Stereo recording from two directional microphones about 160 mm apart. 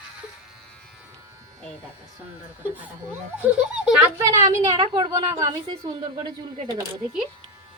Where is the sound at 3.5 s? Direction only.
5° right (ahead or behind).